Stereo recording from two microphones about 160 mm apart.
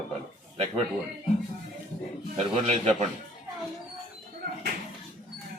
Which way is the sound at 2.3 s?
40° right (ahead or behind).